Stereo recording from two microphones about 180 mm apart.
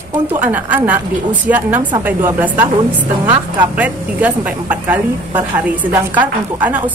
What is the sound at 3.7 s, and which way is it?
Speech, 10° right (ahead or behind).